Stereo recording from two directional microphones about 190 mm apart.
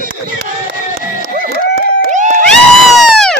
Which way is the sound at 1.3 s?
55° right (ahead or behind).